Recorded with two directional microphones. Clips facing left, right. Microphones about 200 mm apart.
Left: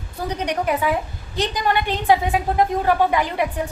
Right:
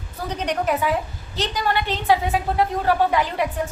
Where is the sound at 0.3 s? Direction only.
10° left (ahead or behind).